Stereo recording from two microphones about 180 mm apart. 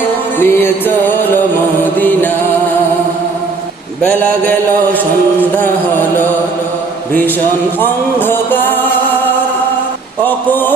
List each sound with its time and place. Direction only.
0.3 s music: 10° left (ahead or behind)
7.8 s music: 10° left (ahead or behind)
10.2 s a sound: 10° left (ahead or behind)